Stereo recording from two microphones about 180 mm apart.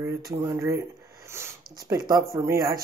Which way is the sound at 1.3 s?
15° right (ahead or behind).